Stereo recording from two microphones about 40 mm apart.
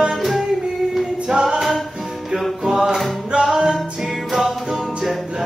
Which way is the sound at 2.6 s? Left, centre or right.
Centre.